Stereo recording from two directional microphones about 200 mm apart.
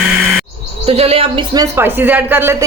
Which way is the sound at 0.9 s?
30° right (ahead or behind).